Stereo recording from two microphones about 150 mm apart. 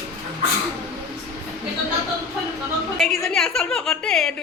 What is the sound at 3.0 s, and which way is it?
Speech, centre (ahead or behind).